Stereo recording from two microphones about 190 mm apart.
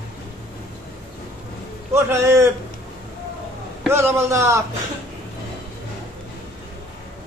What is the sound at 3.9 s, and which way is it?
Speech, 10° right (ahead or behind).